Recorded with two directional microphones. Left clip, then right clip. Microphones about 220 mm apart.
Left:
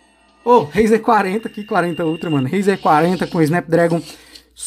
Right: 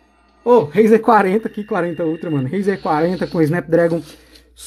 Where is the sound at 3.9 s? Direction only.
20° left (ahead or behind).